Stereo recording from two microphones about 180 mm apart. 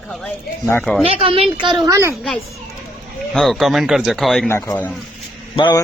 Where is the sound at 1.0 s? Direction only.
30° right (ahead or behind).